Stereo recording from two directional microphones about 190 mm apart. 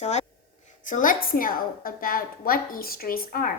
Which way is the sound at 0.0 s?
35° left (ahead or behind).